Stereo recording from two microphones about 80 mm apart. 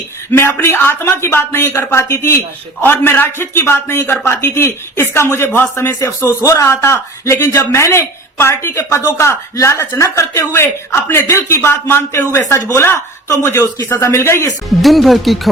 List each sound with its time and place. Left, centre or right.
0.3 s a man's voice: left
14.8 s speech: centre